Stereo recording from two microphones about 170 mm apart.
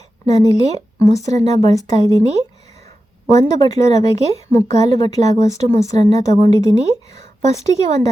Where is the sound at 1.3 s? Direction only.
40° right (ahead or behind).